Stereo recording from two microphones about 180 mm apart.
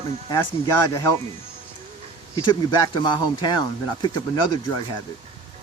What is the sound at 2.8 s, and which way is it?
Speech, 25° left (ahead or behind).